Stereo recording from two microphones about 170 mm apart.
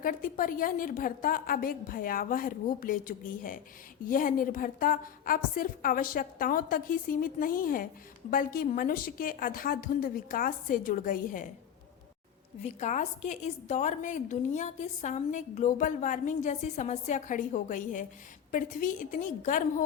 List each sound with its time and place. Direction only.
0.0 s a woman's voice: 55° left (ahead or behind)
12.6 s a woman's voice: 45° left (ahead or behind)